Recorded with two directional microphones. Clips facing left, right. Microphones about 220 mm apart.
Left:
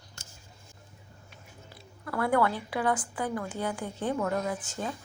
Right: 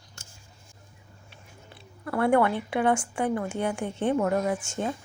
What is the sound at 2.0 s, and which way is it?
A woman's voice, 25° right (ahead or behind).